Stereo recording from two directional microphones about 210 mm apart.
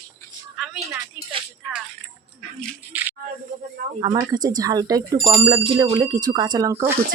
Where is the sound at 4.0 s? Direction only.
20° right (ahead or behind).